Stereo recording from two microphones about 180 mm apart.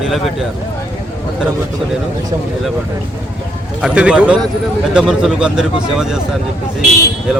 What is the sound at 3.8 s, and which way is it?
Speech, 5° right (ahead or behind).